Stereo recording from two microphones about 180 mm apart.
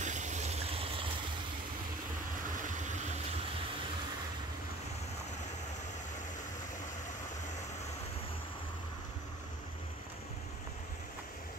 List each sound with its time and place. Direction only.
0.0 s water: 40° right (ahead or behind)